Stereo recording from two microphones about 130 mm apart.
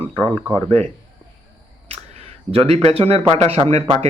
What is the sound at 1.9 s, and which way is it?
Speech, 55° right (ahead or behind).